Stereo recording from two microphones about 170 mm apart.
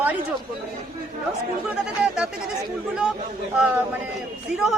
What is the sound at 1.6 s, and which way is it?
Speech, 5° right (ahead or behind).